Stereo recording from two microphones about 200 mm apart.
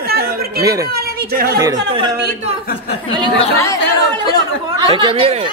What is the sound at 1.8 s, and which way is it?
Speech, 25° right (ahead or behind).